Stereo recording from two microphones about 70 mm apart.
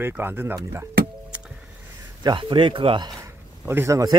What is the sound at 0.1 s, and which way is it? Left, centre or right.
Speech, right.